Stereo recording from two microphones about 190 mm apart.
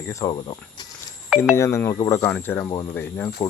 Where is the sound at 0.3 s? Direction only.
25° left (ahead or behind).